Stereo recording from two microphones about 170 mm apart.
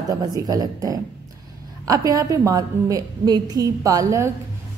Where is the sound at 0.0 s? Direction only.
20° right (ahead or behind).